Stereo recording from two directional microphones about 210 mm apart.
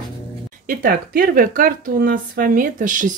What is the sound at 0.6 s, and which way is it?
Speech, 45° right (ahead or behind).